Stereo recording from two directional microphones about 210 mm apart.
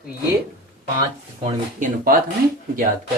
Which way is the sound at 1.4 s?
40° right (ahead or behind).